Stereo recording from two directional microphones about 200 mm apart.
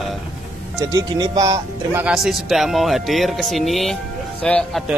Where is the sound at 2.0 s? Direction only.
Centre (ahead or behind).